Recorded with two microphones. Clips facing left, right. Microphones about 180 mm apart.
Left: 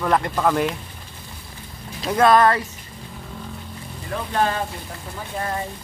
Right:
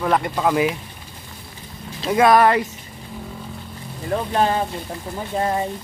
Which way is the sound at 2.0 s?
10° right (ahead or behind).